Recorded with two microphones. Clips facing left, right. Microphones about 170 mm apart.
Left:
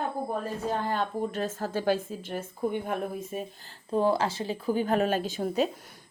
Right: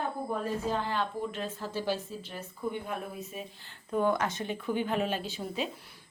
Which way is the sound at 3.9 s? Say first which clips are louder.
Left 3 dB; 30° left (ahead or behind).